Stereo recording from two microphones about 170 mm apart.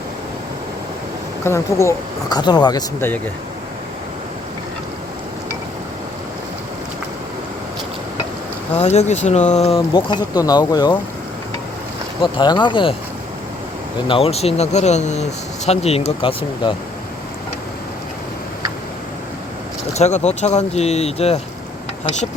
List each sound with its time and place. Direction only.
1.5 s speech: 15° left (ahead or behind)
8.8 s speech: 40° left (ahead or behind); by 10.9 s 20° left (ahead or behind)
12.2 s speech: 25° left (ahead or behind)
14.1 s speech: 35° left (ahead or behind)
19.9 s speech: 40° left (ahead or behind)